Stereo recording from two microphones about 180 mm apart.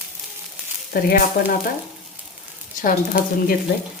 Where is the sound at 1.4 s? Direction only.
65° left (ahead or behind).